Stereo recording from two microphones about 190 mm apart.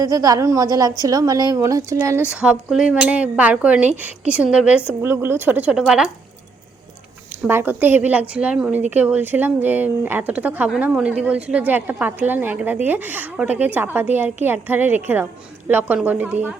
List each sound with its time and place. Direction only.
0.0 s a woman's voice: 20° right (ahead or behind); by 6.1 s 5° right (ahead or behind)
7.4 s a woman's voice: 10° right (ahead or behind)